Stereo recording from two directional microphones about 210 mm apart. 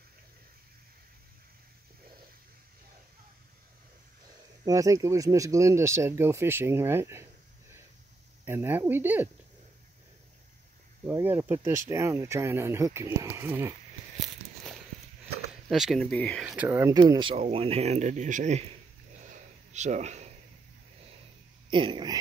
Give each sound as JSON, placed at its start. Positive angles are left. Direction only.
{"t": 4.6, "sound": "speech", "side_deg": -15}
{"t": 8.5, "sound": "speech", "side_deg": -10}
{"t": 11.1, "sound": "speech", "side_deg": -10}
{"t": 14.2, "sound": "a sound", "side_deg": 0}
{"t": 15.7, "sound": "speech", "side_deg": 0}
{"t": 16.6, "sound": "speech", "side_deg": -15}
{"t": 19.3, "sound": "a sound", "side_deg": -35}
{"t": 21.6, "sound": "speech", "side_deg": -20}